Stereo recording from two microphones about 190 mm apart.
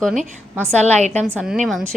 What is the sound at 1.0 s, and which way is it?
Speech, 35° right (ahead or behind).